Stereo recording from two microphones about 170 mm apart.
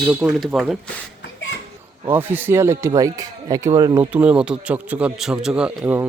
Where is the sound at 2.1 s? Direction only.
10° right (ahead or behind).